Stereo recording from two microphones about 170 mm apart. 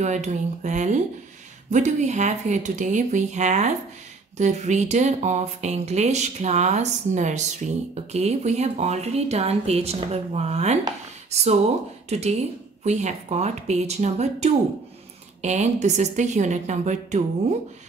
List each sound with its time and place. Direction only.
0.0 s speech: 45° right (ahead or behind)
12.1 s speech: 40° right (ahead or behind)